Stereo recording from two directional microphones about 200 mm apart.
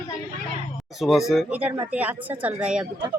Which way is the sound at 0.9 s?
Centre (ahead or behind).